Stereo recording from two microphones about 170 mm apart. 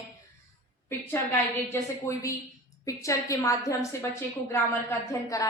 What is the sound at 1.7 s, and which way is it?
A woman's voice, 15° left (ahead or behind).